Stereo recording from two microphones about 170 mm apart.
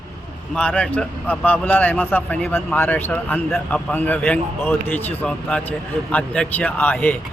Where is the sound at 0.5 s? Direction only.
5° left (ahead or behind).